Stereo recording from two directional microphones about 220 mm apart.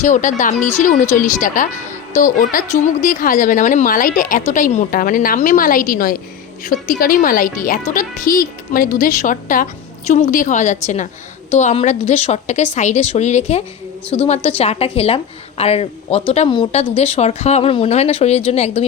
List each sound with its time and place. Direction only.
0.0 s speech: 35° left (ahead or behind)